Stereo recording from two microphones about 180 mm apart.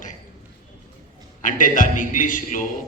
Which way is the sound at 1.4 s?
45° left (ahead or behind).